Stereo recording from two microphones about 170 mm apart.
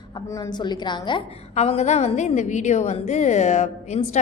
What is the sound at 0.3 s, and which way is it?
Speech, 20° left (ahead or behind).